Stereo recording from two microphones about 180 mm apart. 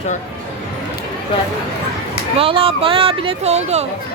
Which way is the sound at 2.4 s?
30° right (ahead or behind).